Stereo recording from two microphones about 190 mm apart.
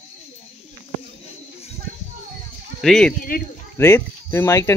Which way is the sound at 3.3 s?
50° left (ahead or behind).